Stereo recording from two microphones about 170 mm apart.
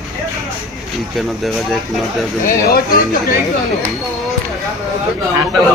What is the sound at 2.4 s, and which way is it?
Speech, 60° left (ahead or behind).